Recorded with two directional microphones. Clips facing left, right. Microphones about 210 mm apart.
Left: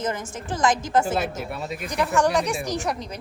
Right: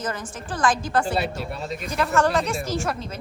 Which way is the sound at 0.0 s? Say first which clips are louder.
Left 2 dB; 25° left (ahead or behind).